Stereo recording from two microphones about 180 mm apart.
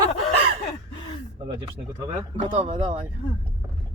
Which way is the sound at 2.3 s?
35° right (ahead or behind).